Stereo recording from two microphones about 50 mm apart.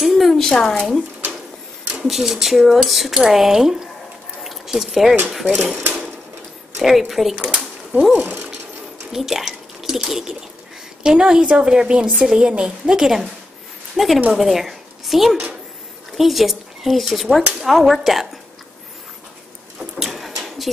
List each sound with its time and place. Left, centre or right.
0.0 s a sound: centre
2.0 s speech: centre
4.4 s squish: centre
5.3 s speech: centre
6.8 s speech: centre
7.4 s a sound: centre
8.1 s speech: right
9.1 s a woman's voice: centre
19.8 s a sound: centre